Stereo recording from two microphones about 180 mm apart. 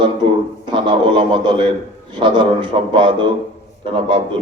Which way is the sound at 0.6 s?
30° right (ahead or behind).